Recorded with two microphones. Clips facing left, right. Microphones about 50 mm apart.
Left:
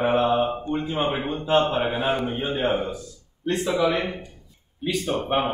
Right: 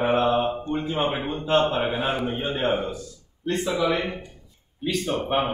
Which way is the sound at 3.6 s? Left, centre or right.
Left.